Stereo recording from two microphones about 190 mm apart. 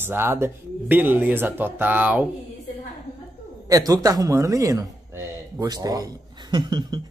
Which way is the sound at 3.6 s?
20° right (ahead or behind).